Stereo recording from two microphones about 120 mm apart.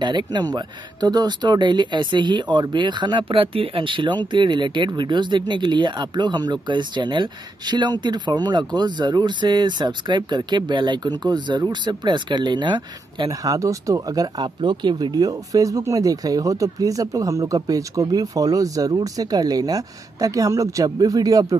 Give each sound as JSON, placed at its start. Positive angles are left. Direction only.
{"t": 0.0, "sound": "speech", "side_deg": -40}
{"t": 13.3, "sound": "speech", "side_deg": -30}